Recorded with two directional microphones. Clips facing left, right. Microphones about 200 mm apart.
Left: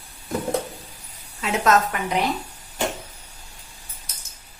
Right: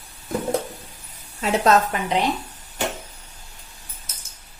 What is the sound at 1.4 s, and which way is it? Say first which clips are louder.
Speech: right 2 dB; 35° right (ahead or behind).